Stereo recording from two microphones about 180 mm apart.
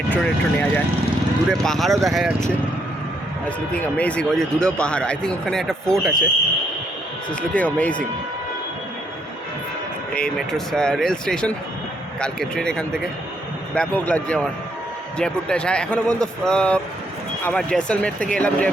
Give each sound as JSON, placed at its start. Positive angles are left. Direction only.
{"t": 0.1, "sound": "speech", "side_deg": 10}
{"t": 3.7, "sound": "speech", "side_deg": 5}
{"t": 7.5, "sound": "speech", "side_deg": 10}
{"t": 10.2, "sound": "speech", "side_deg": 5}